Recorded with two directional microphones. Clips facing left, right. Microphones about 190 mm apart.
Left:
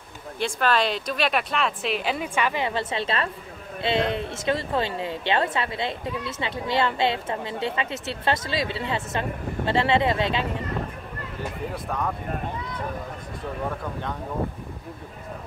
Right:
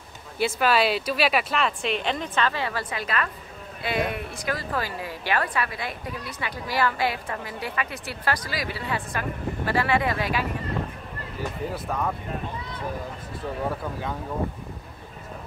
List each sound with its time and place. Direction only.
0.4 s a woman's voice: 5° right (ahead or behind); by 10.4 s 25° left (ahead or behind)
11.7 s speech: centre (ahead or behind)